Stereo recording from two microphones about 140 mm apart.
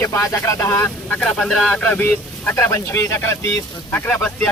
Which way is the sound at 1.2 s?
5° left (ahead or behind).